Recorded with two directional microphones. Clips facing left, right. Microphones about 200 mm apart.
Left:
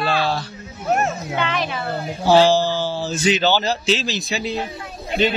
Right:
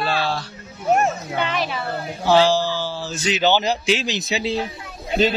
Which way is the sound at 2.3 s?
15° left (ahead or behind).